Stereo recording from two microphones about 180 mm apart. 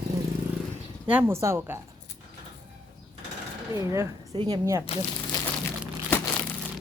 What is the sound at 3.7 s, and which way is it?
Speech, 15° right (ahead or behind).